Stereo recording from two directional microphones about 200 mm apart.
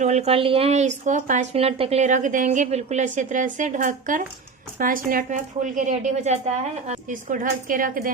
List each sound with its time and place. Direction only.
0.0 s a woman's voice: 35° right (ahead or behind)